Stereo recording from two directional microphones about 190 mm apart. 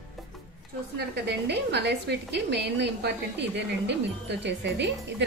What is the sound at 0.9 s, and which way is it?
A woman's voice, 60° right (ahead or behind).